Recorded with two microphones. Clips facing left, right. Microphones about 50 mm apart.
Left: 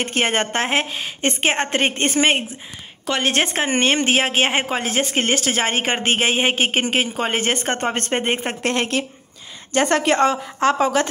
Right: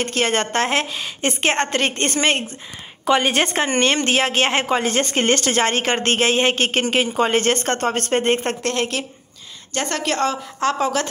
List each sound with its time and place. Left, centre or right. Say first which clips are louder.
0.0 s a woman's voice: even; centre
3.1 s a woman's voice: right 3 dB; centre
3.6 s a woman's voice: even; centre
7.9 s a woman's voice: right 2 dB; left
8.2 s a woman's voice: right 2 dB; centre